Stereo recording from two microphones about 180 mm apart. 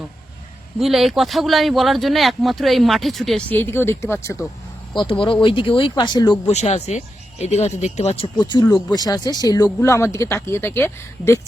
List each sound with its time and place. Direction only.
0.8 s speech: centre (ahead or behind); by 4.4 s 15° left (ahead or behind)
5.2 s speech: 30° left (ahead or behind)
6.5 s speech: 40° left (ahead or behind); by 11.3 s 15° left (ahead or behind)